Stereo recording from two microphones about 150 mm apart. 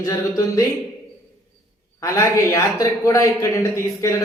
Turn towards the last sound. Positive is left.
turn(degrees=20)  # may be behind; listen again after turning